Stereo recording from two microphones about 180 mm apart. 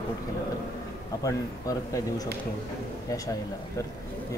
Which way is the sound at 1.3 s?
20° left (ahead or behind).